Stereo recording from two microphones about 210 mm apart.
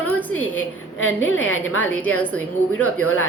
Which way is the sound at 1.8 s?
10° left (ahead or behind).